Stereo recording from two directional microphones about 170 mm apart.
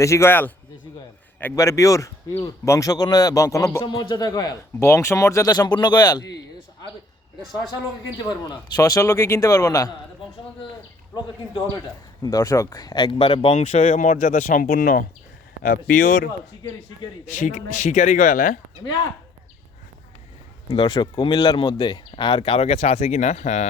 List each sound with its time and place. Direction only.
0.0 s speech: 15° left (ahead or behind)
8.3 s speech: 25° left (ahead or behind)
12.2 s speech: 20° left (ahead or behind); by 16.3 s 55° left (ahead or behind)
17.3 s speech: 50° left (ahead or behind)
20.7 s speech: 30° left (ahead or behind)